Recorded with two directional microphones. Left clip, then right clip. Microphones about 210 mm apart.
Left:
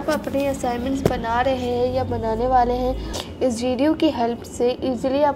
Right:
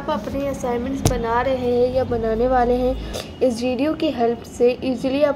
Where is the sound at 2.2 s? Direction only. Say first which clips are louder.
Left 1 dB; 10° left (ahead or behind).